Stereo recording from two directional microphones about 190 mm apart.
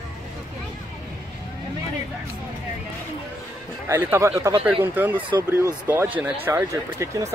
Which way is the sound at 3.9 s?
15° right (ahead or behind).